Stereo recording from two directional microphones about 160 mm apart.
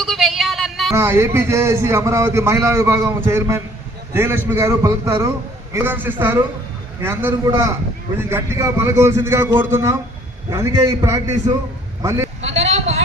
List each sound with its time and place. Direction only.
0.0 s a sound: centre (ahead or behind)
0.9 s a man's voice: 15° right (ahead or behind)
12.4 s speech: 45° right (ahead or behind)